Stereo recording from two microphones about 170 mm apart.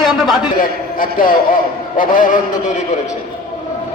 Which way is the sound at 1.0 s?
55° left (ahead or behind).